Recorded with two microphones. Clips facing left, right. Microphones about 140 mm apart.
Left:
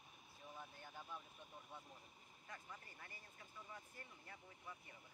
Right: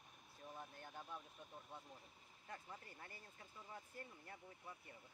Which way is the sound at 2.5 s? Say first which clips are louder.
Right 2 dB; 30° right (ahead or behind).